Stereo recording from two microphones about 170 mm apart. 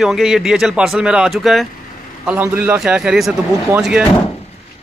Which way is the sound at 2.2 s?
10° right (ahead or behind).